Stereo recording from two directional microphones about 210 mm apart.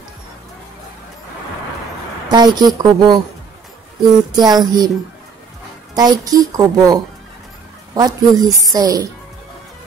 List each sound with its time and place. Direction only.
2.3 s speech: 20° right (ahead or behind)
4.4 s speech: 20° right (ahead or behind)
5.9 s speech: 15° right (ahead or behind)
8.5 s a woman's voice: centre (ahead or behind)
8.7 s speech: 15° right (ahead or behind)